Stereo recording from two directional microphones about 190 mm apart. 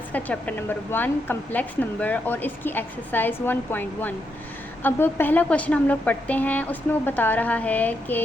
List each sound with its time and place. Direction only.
0.1 s a woman's voice: 10° left (ahead or behind)